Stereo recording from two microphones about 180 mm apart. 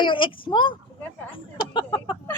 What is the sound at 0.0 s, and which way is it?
Speech, 30° left (ahead or behind).